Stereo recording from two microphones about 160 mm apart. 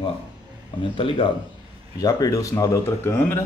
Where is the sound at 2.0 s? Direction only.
20° left (ahead or behind).